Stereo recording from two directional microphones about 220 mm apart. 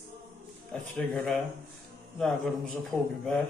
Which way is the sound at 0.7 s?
5° left (ahead or behind).